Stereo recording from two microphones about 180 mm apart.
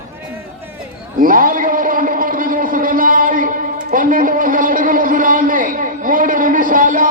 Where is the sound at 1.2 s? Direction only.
50° right (ahead or behind).